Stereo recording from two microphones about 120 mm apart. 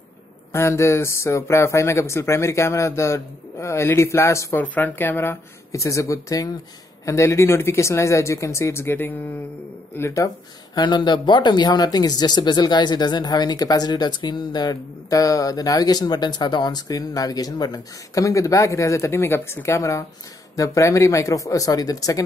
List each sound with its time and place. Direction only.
0.5 s speech: 25° left (ahead or behind)